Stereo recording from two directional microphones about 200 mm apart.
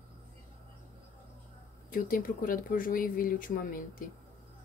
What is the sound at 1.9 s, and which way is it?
Speech, 45° left (ahead or behind).